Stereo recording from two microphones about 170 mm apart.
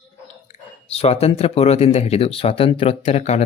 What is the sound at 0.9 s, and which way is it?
Speech, 35° left (ahead or behind).